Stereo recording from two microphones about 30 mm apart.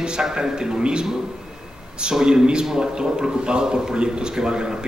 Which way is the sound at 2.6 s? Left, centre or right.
Centre.